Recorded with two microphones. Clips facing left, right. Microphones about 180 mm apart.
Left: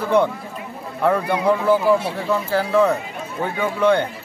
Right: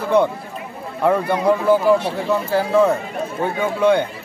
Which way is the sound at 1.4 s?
10° right (ahead or behind).